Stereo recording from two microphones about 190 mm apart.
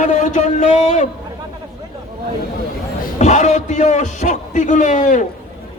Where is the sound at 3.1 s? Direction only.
40° left (ahead or behind).